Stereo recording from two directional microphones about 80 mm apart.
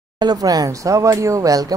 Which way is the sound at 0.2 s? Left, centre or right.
Right.